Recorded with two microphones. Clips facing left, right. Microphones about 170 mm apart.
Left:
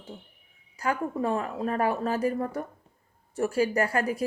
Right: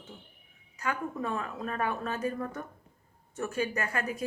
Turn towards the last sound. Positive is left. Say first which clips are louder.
# left 7 dB
turn(degrees=35)  # may be behind; listen again after turning